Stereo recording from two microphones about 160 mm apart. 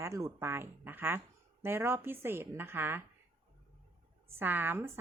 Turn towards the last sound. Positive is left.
turn(degrees=-15)  # may be behind; listen again after turning